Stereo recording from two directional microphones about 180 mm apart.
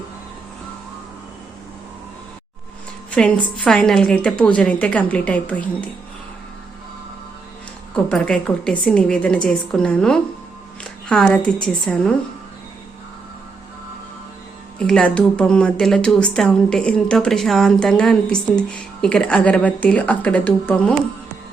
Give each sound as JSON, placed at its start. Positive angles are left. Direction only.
{"t": 3.6, "sound": "a woman's voice", "side_deg": 5}
{"t": 7.9, "sound": "a woman's voice", "side_deg": 5}
{"t": 14.8, "sound": "a woman's voice", "side_deg": 5}